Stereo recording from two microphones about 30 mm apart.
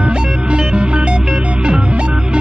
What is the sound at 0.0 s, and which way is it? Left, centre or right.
Music, right.